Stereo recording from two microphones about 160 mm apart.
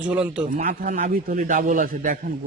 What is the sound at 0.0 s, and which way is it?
Speech, 10° right (ahead or behind).